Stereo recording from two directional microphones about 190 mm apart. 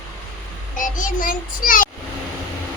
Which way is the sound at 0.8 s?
45° left (ahead or behind).